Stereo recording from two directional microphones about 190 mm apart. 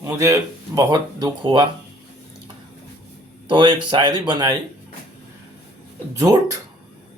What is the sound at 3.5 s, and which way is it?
Speech, 25° right (ahead or behind).